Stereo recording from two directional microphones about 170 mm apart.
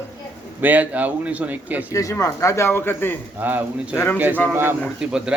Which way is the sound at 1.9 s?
20° left (ahead or behind).